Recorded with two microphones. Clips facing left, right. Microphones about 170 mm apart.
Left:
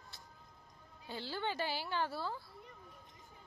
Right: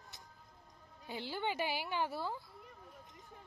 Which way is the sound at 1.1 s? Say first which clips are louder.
Right 1 dB; 15° right (ahead or behind).